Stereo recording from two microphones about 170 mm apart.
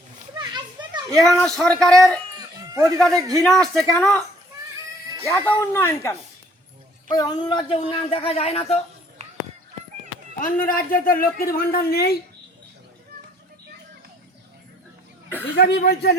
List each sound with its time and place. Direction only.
0.3 s children playing: 25° right (ahead or behind)
1.1 s speech: centre (ahead or behind)
5.2 s a man's voice: 15° left (ahead or behind); by 8.8 s 35° left (ahead or behind)
10.4 s speech: 55° left (ahead or behind)
15.5 s speech: 70° left (ahead or behind)